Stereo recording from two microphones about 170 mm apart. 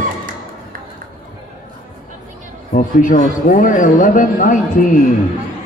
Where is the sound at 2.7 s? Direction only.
50° left (ahead or behind).